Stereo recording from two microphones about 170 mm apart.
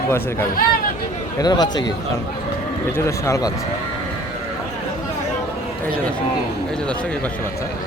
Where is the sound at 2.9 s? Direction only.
15° left (ahead or behind).